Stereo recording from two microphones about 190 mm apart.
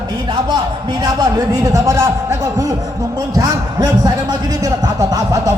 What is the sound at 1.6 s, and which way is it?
A man's voice, 15° right (ahead or behind).